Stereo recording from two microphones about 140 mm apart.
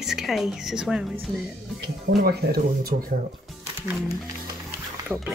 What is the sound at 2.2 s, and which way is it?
Speech, 90° right.